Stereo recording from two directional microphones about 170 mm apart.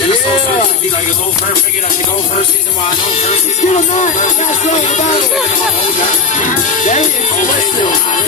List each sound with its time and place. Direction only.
3.3 s music: 40° left (ahead or behind)
6.3 s music: 45° left (ahead or behind)